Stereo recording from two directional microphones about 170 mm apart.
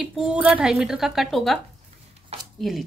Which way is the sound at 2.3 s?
40° right (ahead or behind).